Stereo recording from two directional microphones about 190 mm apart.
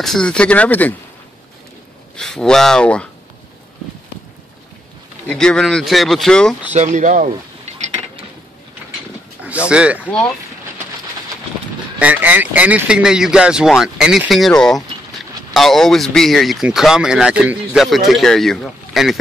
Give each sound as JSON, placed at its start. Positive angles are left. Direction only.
{"t": 0.0, "sound": "speech", "side_deg": 5}
{"t": 2.1, "sound": "speech", "side_deg": 5}
{"t": 5.3, "sound": "speech", "side_deg": 5}
{"t": 6.7, "sound": "speech", "side_deg": -40}
{"t": 9.7, "sound": "speech", "side_deg": -5}
{"t": 12.0, "sound": "speech", "side_deg": -10}